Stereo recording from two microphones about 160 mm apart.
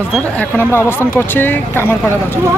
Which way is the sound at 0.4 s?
15° left (ahead or behind).